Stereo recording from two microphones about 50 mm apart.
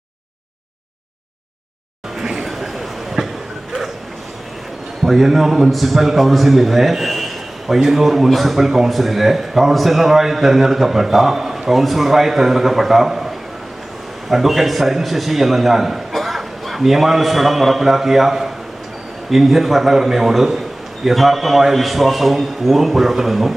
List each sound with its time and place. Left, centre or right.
2.1 s a sound: centre
5.0 s a man's voice: centre
14.3 s a man's voice: centre